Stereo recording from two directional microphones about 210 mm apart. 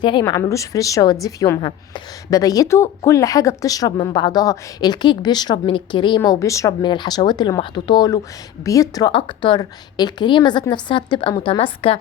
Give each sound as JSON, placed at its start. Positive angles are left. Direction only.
{"t": 0.0, "sound": "a woman's voice", "side_deg": 20}